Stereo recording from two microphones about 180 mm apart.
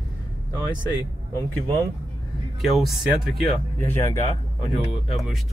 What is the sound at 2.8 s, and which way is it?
Speech, centre (ahead or behind).